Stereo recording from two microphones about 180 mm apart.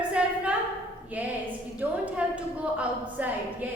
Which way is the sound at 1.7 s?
10° right (ahead or behind).